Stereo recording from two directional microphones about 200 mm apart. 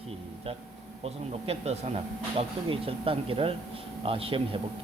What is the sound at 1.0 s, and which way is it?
Speech, 30° right (ahead or behind).